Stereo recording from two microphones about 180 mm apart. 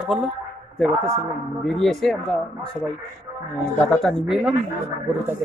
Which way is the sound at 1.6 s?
Centre (ahead or behind).